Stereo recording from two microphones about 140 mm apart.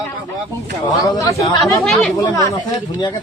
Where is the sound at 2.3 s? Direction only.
25° left (ahead or behind).